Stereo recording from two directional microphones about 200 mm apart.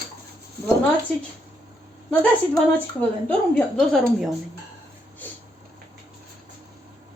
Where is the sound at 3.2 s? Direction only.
5° left (ahead or behind).